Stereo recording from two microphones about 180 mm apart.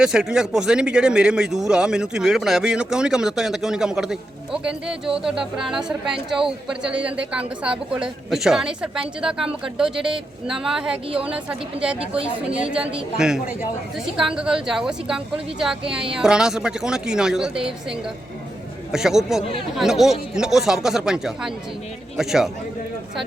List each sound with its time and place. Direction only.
0.0 s speech: 5° right (ahead or behind)
11.9 s speech: 30° right (ahead or behind)
12.7 s speech: 5° right (ahead or behind)
18.9 s speech: 5° right (ahead or behind)